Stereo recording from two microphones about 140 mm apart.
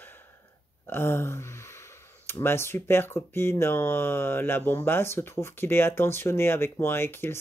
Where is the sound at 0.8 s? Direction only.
15° left (ahead or behind).